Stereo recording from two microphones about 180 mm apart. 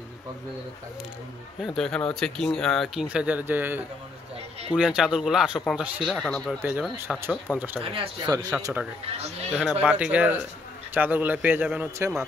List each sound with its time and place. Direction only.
1.6 s speech: centre (ahead or behind)
6.6 s a man's voice: 10° right (ahead or behind)
7.8 s speech: 30° right (ahead or behind)
8.3 s speech: 20° right (ahead or behind)
9.6 s a man's voice: 5° right (ahead or behind)